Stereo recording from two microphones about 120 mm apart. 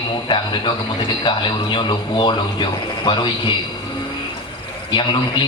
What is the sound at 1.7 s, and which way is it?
A man's voice, 40° left (ahead or behind).